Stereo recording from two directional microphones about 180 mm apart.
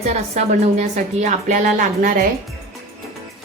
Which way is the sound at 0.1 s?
40° right (ahead or behind).